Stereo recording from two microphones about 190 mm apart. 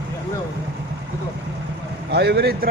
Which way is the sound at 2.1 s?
60° right (ahead or behind).